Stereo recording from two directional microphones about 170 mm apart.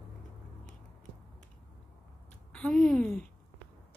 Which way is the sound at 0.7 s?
50° left (ahead or behind).